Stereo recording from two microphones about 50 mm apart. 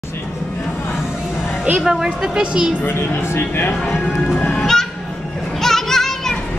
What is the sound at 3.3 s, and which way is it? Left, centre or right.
Speech, left.